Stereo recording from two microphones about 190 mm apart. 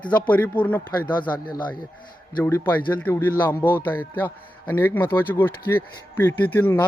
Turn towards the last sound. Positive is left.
turn(degrees=10)  # may be behind; listen again after turning